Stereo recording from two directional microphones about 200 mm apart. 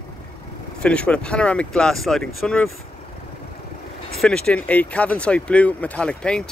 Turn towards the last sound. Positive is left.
turn(degrees=5)  # may be behind; listen again after turning